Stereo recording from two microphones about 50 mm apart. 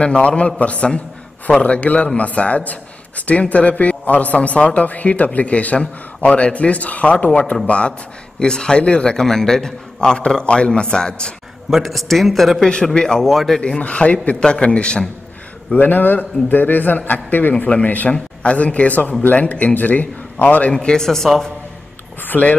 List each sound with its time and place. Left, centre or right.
0.0 s a man's voice: left
11.7 s speech: centre
12.8 s a man's voice: centre
13.6 s speech: left
15.7 s a man's voice: left
20.7 s a man's voice: centre
22.3 s speech: left